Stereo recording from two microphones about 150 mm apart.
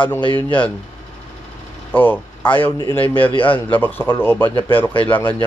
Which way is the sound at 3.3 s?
35° left (ahead or behind).